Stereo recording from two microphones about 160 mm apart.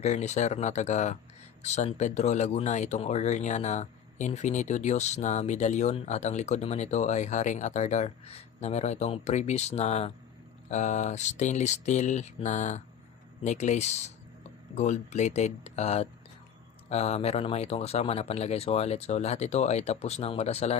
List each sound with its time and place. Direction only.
0.0 s speech: 45° left (ahead or behind)